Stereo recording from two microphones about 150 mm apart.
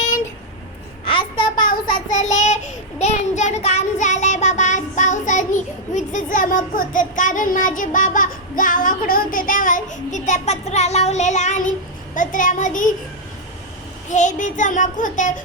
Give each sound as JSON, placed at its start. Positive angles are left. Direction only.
{"t": 1.0, "sound": "babbling", "side_deg": 35}
{"t": 1.5, "sound": "child singing", "side_deg": 65}
{"t": 14.1, "sound": "child singing", "side_deg": 55}